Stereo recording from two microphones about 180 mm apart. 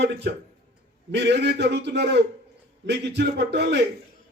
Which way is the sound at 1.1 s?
70° right (ahead or behind).